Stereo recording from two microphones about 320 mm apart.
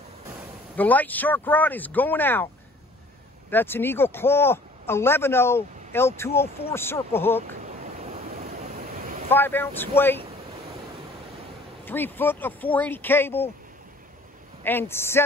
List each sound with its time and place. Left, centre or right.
0.7 s speech: centre
7.8 s waves: right
9.3 s speech: centre
11.8 s speech: centre
14.6 s speech: centre